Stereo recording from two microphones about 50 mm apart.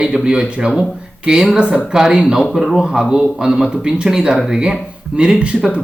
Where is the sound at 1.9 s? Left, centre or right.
Centre.